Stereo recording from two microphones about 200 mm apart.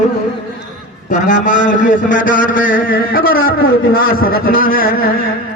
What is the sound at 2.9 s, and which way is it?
A man's voice, 50° left (ahead or behind).